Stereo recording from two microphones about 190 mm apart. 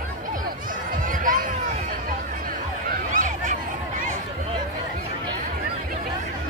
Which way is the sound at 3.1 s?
40° right (ahead or behind).